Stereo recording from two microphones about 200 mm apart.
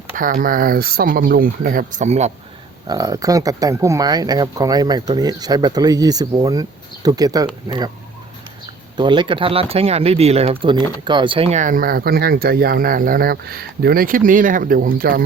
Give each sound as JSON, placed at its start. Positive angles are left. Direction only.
{"t": 0.1, "sound": "speech", "side_deg": -45}
{"t": 2.8, "sound": "speech", "side_deg": -20}
{"t": 9.0, "sound": "speech", "side_deg": -25}